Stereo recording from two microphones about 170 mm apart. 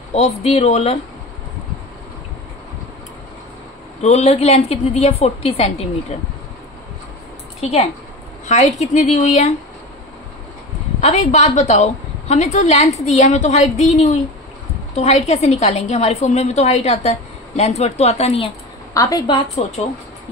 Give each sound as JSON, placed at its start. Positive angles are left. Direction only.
{"t": 0.1, "sound": "a woman's voice", "side_deg": 35}
{"t": 4.0, "sound": "a woman's voice", "side_deg": 40}
{"t": 8.5, "sound": "a woman's voice", "side_deg": 45}
{"t": 11.0, "sound": "a woman's voice", "side_deg": 40}
{"t": 18.9, "sound": "a woman's voice", "side_deg": 25}